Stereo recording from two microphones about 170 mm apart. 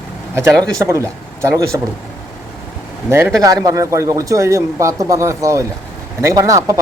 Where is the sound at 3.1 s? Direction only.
10° right (ahead or behind).